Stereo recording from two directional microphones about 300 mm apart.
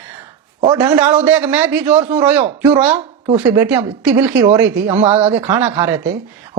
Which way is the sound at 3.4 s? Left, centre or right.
Centre.